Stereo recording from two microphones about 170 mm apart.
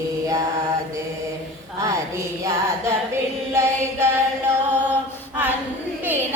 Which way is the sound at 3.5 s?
15° right (ahead or behind).